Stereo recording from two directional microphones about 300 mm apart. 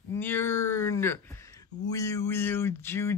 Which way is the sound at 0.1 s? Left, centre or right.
Centre.